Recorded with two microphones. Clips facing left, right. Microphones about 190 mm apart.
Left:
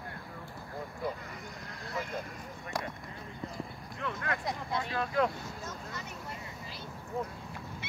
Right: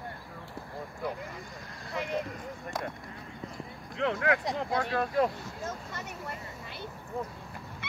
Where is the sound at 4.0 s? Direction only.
80° right.